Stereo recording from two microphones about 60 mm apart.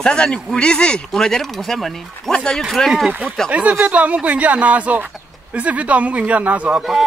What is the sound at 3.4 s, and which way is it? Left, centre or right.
Speech, right.